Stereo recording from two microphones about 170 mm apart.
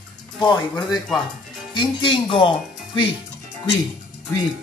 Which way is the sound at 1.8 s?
30° left (ahead or behind).